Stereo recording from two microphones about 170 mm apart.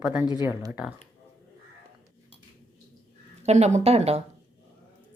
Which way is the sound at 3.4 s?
40° right (ahead or behind).